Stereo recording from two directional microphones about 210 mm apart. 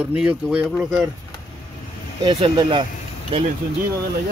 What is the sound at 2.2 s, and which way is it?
Speech, 20° right (ahead or behind).